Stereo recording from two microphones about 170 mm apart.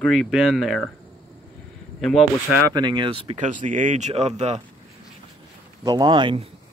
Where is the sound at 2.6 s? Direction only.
25° right (ahead or behind).